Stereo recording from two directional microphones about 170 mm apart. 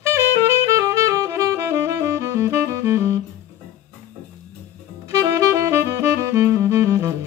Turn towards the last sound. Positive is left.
turn(degrees=-15)  # may be behind; listen again after turning